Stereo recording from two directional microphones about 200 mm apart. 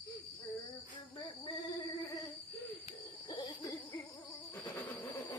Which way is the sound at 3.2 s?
20° left (ahead or behind).